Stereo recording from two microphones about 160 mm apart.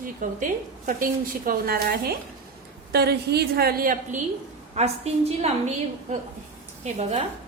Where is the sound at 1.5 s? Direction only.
70° right (ahead or behind).